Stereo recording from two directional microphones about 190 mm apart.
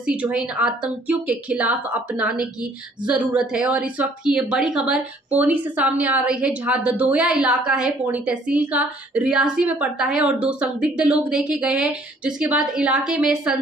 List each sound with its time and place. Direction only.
0.0 s speech: 5° right (ahead or behind)